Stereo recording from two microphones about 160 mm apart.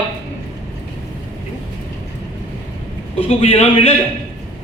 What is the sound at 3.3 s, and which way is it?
Speech, 40° left (ahead or behind).